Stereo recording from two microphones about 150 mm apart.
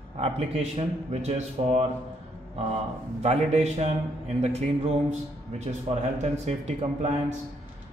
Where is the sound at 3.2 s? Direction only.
45° right (ahead or behind).